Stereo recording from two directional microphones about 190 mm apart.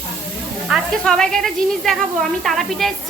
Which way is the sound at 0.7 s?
5° left (ahead or behind).